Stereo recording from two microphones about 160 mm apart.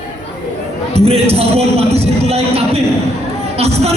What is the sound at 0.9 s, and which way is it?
Speech, 40° right (ahead or behind).